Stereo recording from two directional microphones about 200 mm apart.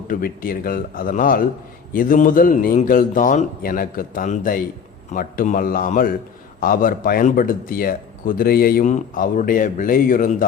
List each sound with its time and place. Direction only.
0.1 s speech: 45° left (ahead or behind)